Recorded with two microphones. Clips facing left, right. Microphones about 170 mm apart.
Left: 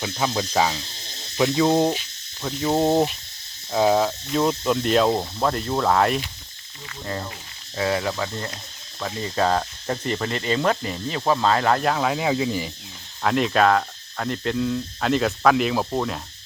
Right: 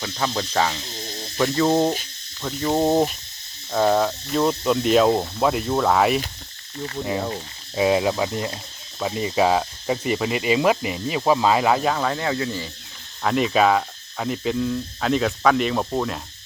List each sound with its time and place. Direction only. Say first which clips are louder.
0.0 s cricket: left 1 dB; 10° left (ahead or behind)
2.4 s speech: even; 5° left (ahead or behind)
7.8 s speech: right 5 dB; 15° right (ahead or behind); by 12.7 s 15° left (ahead or behind)
13.2 s speech: even; centre (ahead or behind)